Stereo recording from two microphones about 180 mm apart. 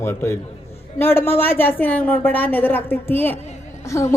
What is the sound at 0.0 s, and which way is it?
A woman's voice, 15° left (ahead or behind).